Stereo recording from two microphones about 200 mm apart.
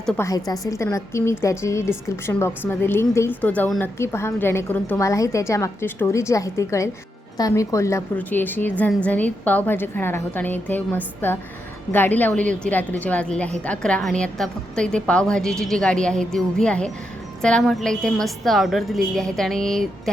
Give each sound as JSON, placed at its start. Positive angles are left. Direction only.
{"t": 0.0, "sound": "a woman's voice", "side_deg": 15}